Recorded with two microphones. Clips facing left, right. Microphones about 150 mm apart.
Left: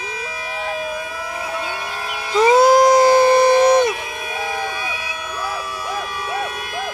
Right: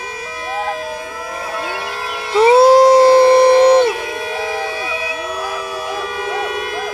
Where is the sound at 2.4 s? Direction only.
30° right (ahead or behind).